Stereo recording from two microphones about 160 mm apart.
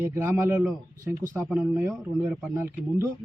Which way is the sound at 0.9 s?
55° right (ahead or behind).